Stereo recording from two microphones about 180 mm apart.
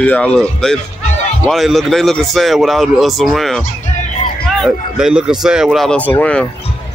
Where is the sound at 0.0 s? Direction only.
5° left (ahead or behind).